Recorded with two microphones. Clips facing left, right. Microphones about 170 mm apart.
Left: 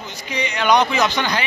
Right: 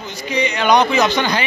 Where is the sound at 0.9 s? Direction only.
15° right (ahead or behind).